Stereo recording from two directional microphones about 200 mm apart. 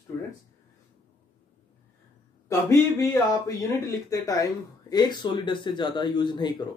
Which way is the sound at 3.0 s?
15° left (ahead or behind).